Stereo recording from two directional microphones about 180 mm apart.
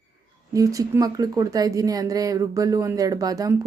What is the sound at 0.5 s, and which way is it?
Speech, 20° right (ahead or behind).